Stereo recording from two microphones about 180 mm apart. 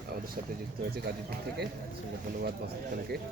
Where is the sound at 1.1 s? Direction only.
55° right (ahead or behind).